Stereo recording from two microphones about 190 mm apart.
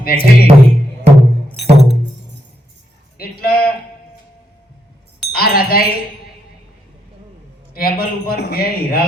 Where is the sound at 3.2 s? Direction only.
55° left (ahead or behind).